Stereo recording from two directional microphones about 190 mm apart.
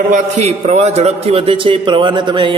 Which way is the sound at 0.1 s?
35° right (ahead or behind).